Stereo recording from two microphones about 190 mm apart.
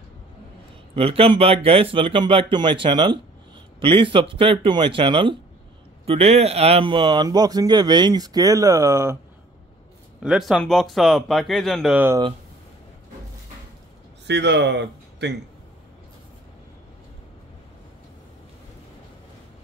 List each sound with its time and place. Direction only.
0.9 s speech: 30° right (ahead or behind); by 9.2 s 15° right (ahead or behind)
10.2 s speech: 5° right (ahead or behind)
14.2 s speech: 65° right (ahead or behind)